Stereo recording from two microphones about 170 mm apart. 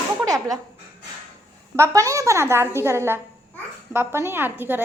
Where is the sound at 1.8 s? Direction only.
20° right (ahead or behind).